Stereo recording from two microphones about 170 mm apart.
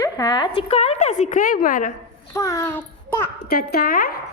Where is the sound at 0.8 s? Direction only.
40° left (ahead or behind).